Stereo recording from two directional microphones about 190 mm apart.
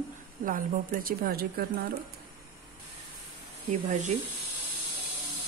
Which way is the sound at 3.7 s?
40° right (ahead or behind).